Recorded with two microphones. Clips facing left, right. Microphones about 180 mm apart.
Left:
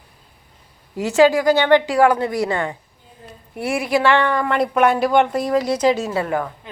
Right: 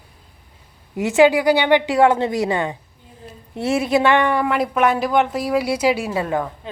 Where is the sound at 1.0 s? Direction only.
15° right (ahead or behind).